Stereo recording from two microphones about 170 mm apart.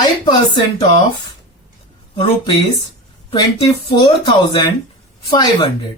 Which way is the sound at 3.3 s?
25° left (ahead or behind).